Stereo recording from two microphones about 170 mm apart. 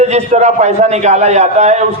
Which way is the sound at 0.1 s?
40° right (ahead or behind).